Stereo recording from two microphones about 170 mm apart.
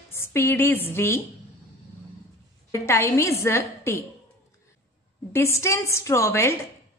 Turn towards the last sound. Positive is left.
turn(degrees=15)  # may be behind; listen again after turning